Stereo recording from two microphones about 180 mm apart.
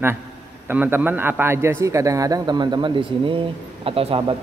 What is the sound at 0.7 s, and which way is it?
A man's voice, 10° right (ahead or behind).